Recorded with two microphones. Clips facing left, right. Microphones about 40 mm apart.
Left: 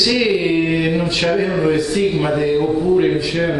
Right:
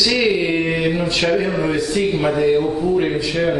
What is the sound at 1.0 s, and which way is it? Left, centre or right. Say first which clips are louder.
A man's voice: left 1 dB; centre.